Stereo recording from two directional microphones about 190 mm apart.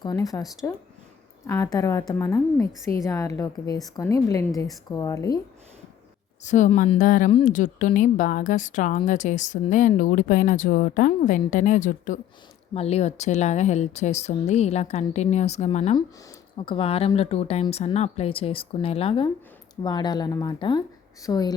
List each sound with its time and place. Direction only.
0.0 s a woman's voice: 20° left (ahead or behind)
1.5 s a woman's voice: 15° left (ahead or behind)
6.4 s speech: 40° left (ahead or behind)
7.0 s speech: 45° left (ahead or behind)
12.7 s a woman's voice: 30° left (ahead or behind)